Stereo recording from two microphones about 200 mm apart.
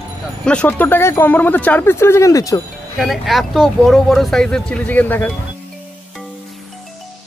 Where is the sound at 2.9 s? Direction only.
Centre (ahead or behind).